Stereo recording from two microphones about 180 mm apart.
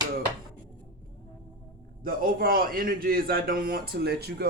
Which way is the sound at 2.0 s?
55° right (ahead or behind).